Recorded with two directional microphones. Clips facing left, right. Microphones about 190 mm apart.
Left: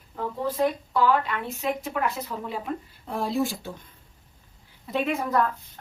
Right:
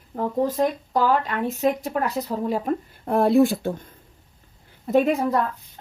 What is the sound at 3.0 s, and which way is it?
Speech, 60° right (ahead or behind).